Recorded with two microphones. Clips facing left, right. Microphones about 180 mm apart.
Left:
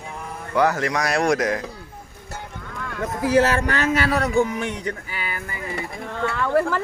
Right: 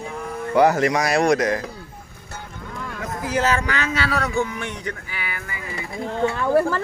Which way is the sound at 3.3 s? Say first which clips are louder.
Left 3 dB; 60° left (ahead or behind).